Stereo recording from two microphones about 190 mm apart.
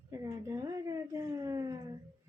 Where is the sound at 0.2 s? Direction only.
15° right (ahead or behind).